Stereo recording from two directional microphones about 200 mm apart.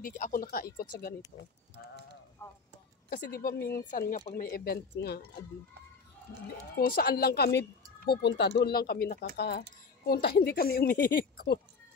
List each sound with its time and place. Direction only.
0.0 s speech: 45° left (ahead or behind)
2.4 s speech: 15° left (ahead or behind)
3.1 s speech: 50° left (ahead or behind)
6.8 s speech: 45° left (ahead or behind)